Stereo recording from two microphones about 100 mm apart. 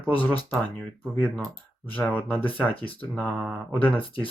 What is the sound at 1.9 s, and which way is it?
Speech, 15° left (ahead or behind).